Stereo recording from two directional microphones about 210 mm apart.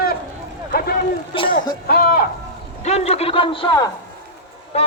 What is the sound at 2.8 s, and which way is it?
A man's voice, 30° left (ahead or behind).